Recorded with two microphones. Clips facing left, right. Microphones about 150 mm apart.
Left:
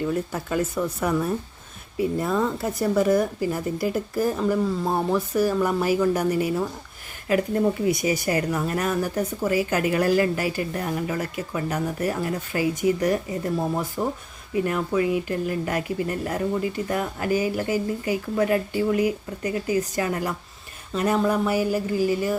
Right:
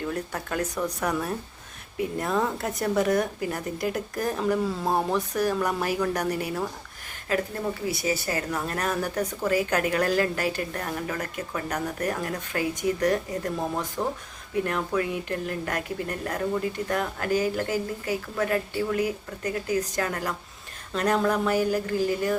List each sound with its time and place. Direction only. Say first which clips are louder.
0.1 s speech: left 5 dB; 5° left (ahead or behind)
7.9 s speech: left 5 dB; 15° left (ahead or behind)